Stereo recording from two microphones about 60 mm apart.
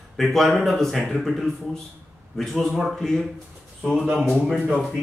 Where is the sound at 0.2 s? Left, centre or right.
Centre.